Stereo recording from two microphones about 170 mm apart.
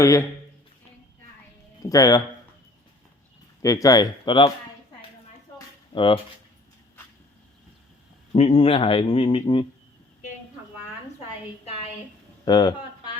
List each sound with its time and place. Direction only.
0.0 s speech: 20° left (ahead or behind)
1.8 s speech: 20° left (ahead or behind)
3.6 s speech: 20° left (ahead or behind)
5.5 s a sound: 30° left (ahead or behind)
8.3 s speech: 35° left (ahead or behind)
12.5 s speech: 25° left (ahead or behind)